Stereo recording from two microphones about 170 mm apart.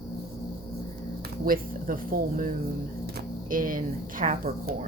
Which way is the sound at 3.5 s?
55° right (ahead or behind).